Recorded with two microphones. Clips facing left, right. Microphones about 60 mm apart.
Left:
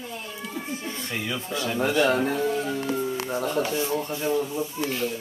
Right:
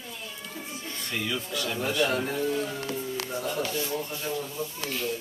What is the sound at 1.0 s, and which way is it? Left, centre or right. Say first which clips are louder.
Speech: even; left.